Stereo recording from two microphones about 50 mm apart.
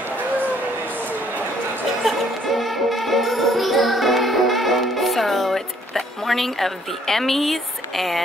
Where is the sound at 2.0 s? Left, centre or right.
Centre.